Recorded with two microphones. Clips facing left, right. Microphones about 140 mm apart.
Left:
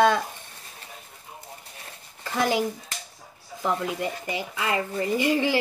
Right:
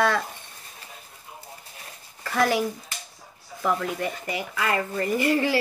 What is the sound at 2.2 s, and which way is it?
Speech, 20° left (ahead or behind).